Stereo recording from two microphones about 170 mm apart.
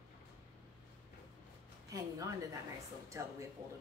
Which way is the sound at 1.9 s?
20° right (ahead or behind).